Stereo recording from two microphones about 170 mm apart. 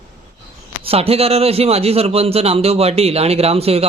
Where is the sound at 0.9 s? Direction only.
35° right (ahead or behind).